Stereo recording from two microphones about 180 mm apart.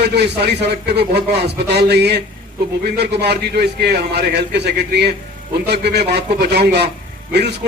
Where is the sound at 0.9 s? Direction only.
65° right (ahead or behind).